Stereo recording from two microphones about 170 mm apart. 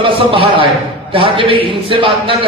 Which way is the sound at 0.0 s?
35° right (ahead or behind).